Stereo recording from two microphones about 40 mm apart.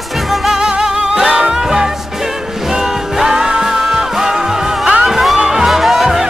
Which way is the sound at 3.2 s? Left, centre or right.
Centre.